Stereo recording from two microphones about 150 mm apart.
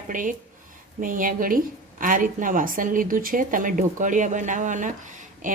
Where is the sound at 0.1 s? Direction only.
60° right (ahead or behind).